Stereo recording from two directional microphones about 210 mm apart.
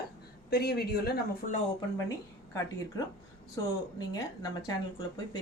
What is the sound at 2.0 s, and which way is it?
Speech, 15° left (ahead or behind).